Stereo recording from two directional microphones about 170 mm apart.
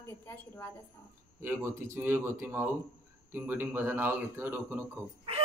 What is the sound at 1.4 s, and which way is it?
Speech, 15° right (ahead or behind).